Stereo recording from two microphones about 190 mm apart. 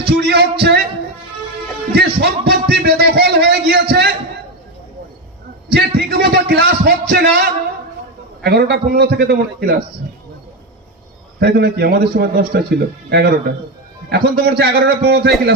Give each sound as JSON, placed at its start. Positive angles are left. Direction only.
{"t": 0.1, "sound": "music", "side_deg": -60}
{"t": 1.9, "sound": "a man's voice", "side_deg": -55}
{"t": 5.7, "sound": "a man's voice", "side_deg": -60}
{"t": 11.3, "sound": "a man's voice", "side_deg": -60}